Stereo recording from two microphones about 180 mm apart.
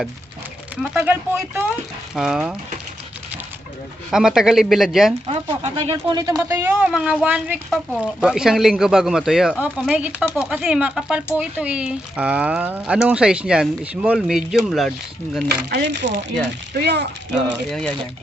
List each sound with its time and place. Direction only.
0.8 s speech: 5° right (ahead or behind)
4.1 s speech: 5° right (ahead or behind)
5.2 s speech: 30° right (ahead or behind)
6.4 s speech: 10° right (ahead or behind)
15.7 s speech: 65° right (ahead or behind)
17.3 s speech: 5° left (ahead or behind)